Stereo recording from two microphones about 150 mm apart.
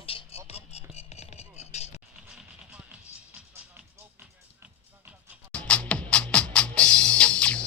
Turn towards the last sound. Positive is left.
turn(degrees=5)  # may be behind; listen again after turning